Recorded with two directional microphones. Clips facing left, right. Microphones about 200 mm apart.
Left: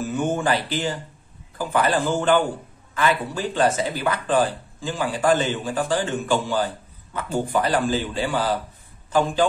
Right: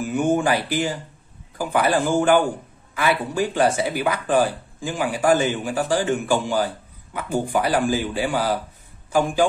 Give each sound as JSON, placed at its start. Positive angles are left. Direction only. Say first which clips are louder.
{"t": 0.0, "sound": "speech", "louder": "right 3 dB", "side_deg": -15}